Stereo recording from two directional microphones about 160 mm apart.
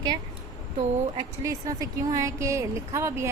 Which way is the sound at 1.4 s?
20° right (ahead or behind).